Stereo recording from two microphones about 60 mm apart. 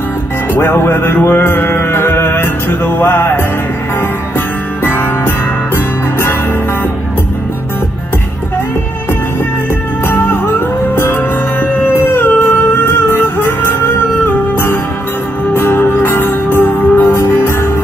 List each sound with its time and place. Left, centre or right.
0.6 s music: left
4.8 s music: left
10.0 s music: left
11.6 s music: left